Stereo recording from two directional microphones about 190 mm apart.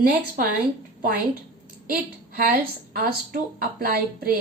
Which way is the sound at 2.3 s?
50° right (ahead or behind).